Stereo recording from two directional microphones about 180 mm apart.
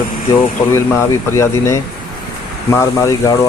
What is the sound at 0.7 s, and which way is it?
A man's voice, 15° left (ahead or behind).